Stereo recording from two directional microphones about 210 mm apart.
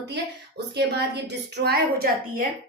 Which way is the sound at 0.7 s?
55° right (ahead or behind).